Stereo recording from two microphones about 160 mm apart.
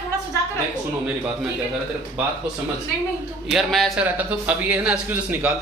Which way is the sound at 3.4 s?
Centre (ahead or behind).